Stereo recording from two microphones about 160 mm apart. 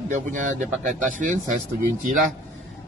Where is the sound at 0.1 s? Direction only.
55° right (ahead or behind).